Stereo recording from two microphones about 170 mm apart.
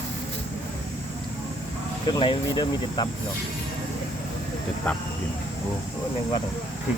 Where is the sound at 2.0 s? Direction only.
30° left (ahead or behind).